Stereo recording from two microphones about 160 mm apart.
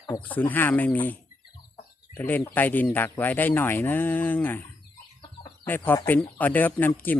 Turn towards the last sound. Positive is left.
turn(degrees=10)  # may be behind; listen again after turning